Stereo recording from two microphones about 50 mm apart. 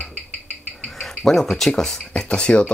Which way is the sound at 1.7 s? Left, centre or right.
Centre.